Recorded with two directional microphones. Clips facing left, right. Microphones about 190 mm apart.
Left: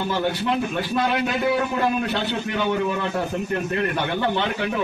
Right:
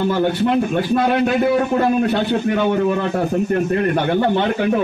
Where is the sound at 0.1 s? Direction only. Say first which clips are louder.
Right 6 dB; 50° right (ahead or behind).